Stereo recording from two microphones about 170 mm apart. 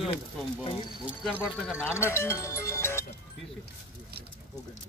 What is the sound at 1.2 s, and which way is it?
Speech, centre (ahead or behind).